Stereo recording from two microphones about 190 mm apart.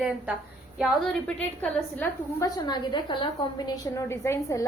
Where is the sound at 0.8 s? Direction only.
5° left (ahead or behind).